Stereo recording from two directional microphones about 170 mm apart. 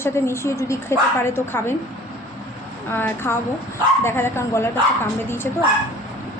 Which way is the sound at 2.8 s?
10° left (ahead or behind).